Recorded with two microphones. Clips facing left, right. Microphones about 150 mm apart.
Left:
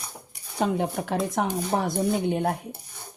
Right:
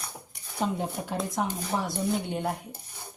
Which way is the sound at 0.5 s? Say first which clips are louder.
Left 5 dB; 70° left (ahead or behind).